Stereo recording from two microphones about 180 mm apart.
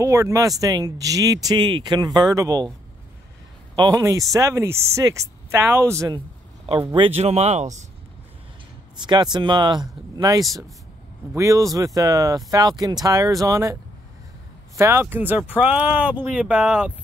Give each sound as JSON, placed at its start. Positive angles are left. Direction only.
{"t": 0.0, "sound": "speech", "side_deg": -15}
{"t": 3.7, "sound": "speech", "side_deg": -20}
{"t": 6.9, "sound": "speech", "side_deg": -30}
{"t": 9.0, "sound": "speech", "side_deg": -25}
{"t": 14.8, "sound": "speech", "side_deg": -15}